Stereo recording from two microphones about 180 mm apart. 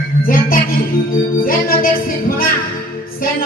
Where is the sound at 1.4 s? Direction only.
50° left (ahead or behind).